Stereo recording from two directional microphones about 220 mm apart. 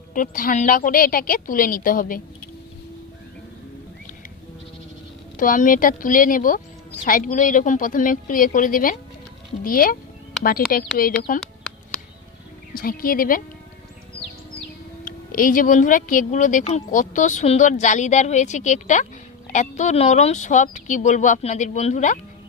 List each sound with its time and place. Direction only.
0.1 s speech: 40° left (ahead or behind)
5.4 s speech: 40° left (ahead or behind)
12.7 s speech: 40° left (ahead or behind)
15.0 s speech: 40° left (ahead or behind)